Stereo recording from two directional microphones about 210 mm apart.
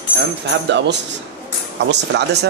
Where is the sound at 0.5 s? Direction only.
55° right (ahead or behind).